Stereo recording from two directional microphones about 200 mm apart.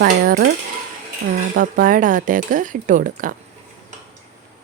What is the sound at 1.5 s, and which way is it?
Speech, 45° right (ahead or behind).